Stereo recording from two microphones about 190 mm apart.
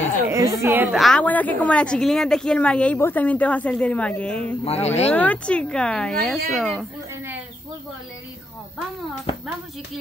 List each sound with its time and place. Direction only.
0.3 s a woman's voice: 15° right (ahead or behind)
0.9 s a woman's voice: 5° left (ahead or behind)
4.6 s speech: 35° left (ahead or behind)
5.1 s speech: 10° left (ahead or behind)